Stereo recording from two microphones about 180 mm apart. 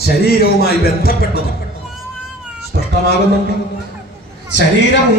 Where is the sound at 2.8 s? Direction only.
65° left (ahead or behind).